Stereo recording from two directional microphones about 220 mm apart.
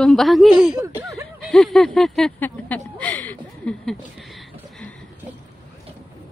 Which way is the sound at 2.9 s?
5° left (ahead or behind).